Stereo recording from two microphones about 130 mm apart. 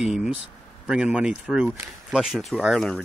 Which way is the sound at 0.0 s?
5° right (ahead or behind).